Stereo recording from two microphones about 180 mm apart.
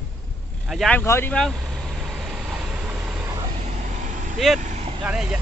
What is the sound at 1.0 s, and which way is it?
Vehicle, 15° left (ahead or behind).